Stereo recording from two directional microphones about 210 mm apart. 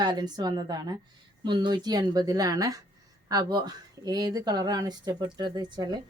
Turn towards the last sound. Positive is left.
turn(degrees=-20)  # may be behind; listen again after turning